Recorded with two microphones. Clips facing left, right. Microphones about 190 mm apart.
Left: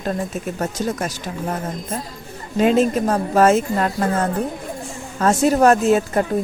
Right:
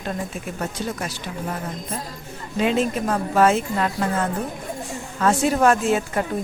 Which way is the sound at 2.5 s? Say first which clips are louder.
Left 5 dB; 45° left (ahead or behind).